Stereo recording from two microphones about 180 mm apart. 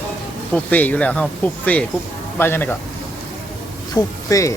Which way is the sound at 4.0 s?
20° left (ahead or behind).